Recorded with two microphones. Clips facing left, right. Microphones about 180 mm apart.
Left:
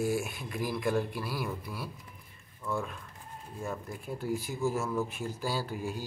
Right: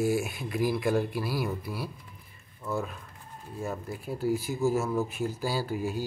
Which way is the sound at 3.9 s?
5° right (ahead or behind).